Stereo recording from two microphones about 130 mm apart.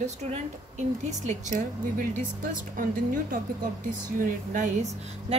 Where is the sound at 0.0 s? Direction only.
60° right (ahead or behind); by 4.6 s 80° right.